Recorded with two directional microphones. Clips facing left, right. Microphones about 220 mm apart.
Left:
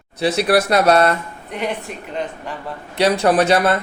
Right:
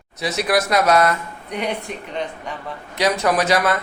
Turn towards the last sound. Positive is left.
turn(degrees=30)  # may be behind; listen again after turning